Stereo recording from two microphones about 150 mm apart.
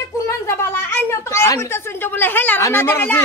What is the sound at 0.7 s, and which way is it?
A woman's voice, 15° left (ahead or behind).